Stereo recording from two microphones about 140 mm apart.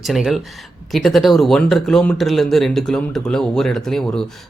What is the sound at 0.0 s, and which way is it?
Speech, centre (ahead or behind).